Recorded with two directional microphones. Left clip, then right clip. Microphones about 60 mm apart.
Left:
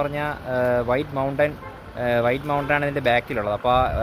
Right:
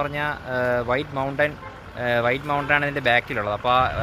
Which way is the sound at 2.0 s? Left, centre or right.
Left.